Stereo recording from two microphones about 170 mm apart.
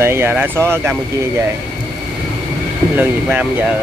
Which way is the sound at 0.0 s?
15° right (ahead or behind).